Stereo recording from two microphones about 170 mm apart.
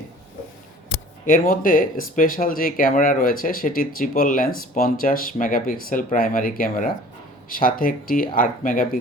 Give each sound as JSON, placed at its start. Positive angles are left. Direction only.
{"t": 1.2, "sound": "speech", "side_deg": 55}